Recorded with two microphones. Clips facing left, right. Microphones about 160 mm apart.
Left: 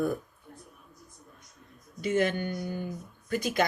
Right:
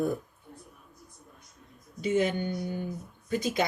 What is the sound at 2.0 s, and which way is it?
Speech, 15° right (ahead or behind).